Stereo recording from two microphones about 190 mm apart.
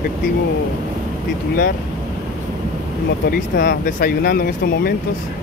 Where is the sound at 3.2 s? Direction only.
50° left (ahead or behind).